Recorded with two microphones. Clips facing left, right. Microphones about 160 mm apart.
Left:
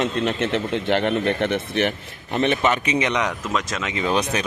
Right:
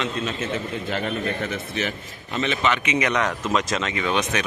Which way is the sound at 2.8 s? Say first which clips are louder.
Left 1 dB; 30° left (ahead or behind).